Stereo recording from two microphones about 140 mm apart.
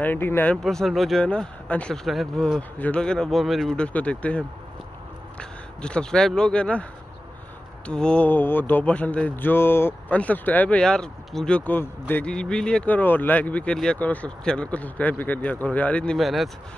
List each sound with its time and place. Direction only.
0.0 s speech: 15° left (ahead or behind)
0.6 s speech: centre (ahead or behind)